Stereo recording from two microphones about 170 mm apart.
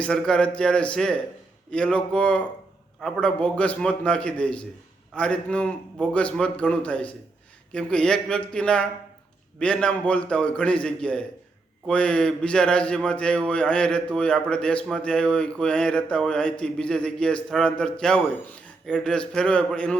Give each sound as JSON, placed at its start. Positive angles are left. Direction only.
{"t": 0.0, "sound": "a man's voice", "side_deg": 5}